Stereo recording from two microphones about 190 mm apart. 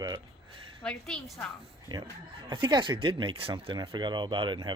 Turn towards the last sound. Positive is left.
turn(degrees=-25)  # may be behind; listen again after turning